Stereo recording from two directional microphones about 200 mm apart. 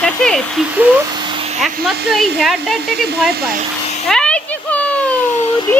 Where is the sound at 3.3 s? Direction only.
50° right (ahead or behind).